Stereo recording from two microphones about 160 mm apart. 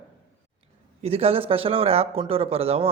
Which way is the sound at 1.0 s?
40° right (ahead or behind).